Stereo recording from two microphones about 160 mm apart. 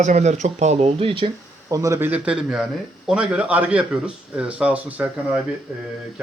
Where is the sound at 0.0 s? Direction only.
45° right (ahead or behind).